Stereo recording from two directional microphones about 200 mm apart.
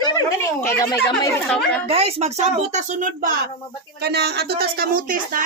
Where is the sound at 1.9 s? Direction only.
30° right (ahead or behind).